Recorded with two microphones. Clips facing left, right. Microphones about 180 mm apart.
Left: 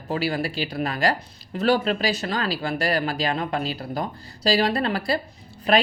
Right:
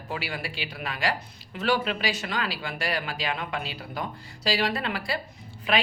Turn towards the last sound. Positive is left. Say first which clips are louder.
# left 6 dB
turn(degrees=40)  # may be behind; listen again after turning